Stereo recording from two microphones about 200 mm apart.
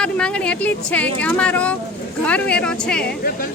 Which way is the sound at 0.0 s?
5° left (ahead or behind).